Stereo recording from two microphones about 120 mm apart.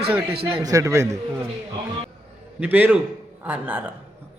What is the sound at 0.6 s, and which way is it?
Speech, 25° right (ahead or behind).